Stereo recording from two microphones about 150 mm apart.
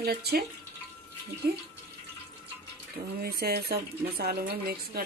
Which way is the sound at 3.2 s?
90° right.